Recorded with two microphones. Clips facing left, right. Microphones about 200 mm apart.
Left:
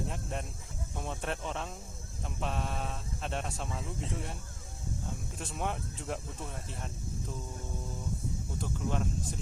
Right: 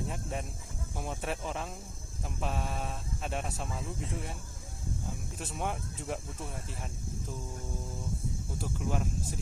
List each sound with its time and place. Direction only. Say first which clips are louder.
0.1 s speech: right 1 dB; centre (ahead or behind)
5.4 s speech: even; centre (ahead or behind)
8.5 s speech: even; 5° right (ahead or behind)